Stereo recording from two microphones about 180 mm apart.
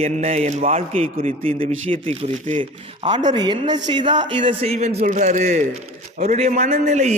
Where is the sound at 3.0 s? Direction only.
25° right (ahead or behind).